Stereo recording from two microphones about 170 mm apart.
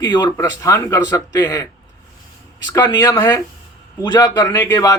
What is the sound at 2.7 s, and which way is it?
Speech, 25° left (ahead or behind).